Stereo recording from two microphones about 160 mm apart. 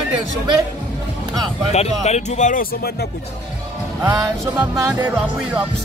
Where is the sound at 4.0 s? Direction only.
20° right (ahead or behind).